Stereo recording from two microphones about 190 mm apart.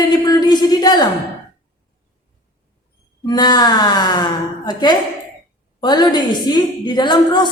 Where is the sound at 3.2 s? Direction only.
20° left (ahead or behind).